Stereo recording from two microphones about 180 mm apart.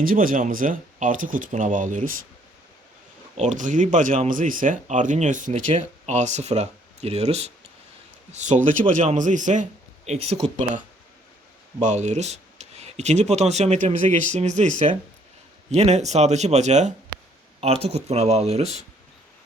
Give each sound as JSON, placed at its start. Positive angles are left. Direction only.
{"t": 0.0, "sound": "speech", "side_deg": -50}
{"t": 3.3, "sound": "speech", "side_deg": -40}